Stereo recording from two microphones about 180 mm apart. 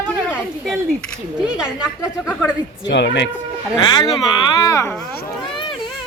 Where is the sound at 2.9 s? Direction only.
75° left (ahead or behind).